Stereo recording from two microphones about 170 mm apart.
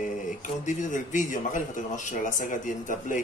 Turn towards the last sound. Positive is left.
turn(degrees=50)  # may be behind; listen again after turning